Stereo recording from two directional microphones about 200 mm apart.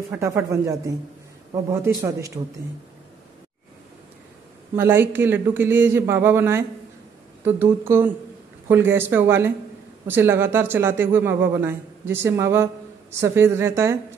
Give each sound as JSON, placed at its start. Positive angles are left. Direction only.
{"t": 0.1, "sound": "speech", "side_deg": -15}
{"t": 4.7, "sound": "speech", "side_deg": -10}